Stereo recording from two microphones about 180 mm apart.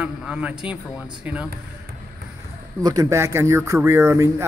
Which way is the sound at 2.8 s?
20° right (ahead or behind).